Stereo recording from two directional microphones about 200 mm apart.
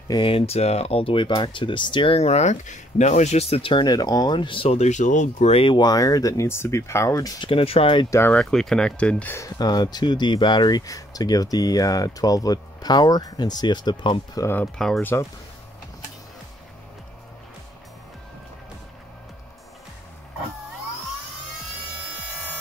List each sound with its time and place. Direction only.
0.1 s speech: 25° left (ahead or behind)
8.2 s speech: 5° left (ahead or behind)